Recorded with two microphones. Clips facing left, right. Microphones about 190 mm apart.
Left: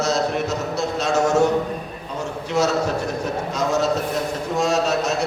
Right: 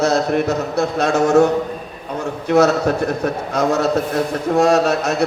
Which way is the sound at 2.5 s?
60° right (ahead or behind).